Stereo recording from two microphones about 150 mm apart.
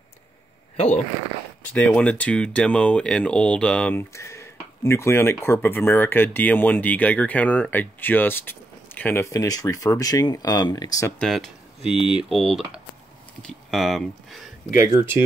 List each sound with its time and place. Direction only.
0.7 s speech: 45° left (ahead or behind)
1.6 s speech: 10° left (ahead or behind)
11.1 s speech: centre (ahead or behind)
12.0 s speech: 40° left (ahead or behind)
12.3 s speech: centre (ahead or behind)